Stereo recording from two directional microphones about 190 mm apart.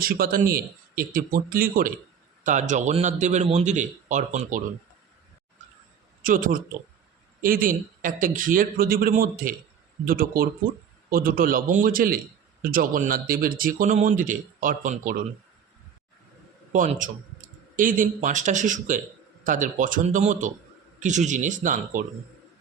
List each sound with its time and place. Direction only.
0.0 s a man's voice: 50° right (ahead or behind)
6.2 s speech: 45° right (ahead or behind)
16.7 s a man's voice: 45° right (ahead or behind)